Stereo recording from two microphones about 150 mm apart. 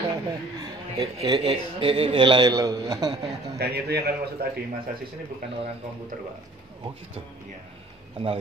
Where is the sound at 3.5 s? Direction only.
90° right.